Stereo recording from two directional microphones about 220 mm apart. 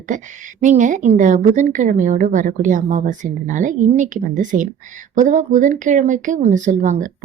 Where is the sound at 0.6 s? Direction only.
35° right (ahead or behind).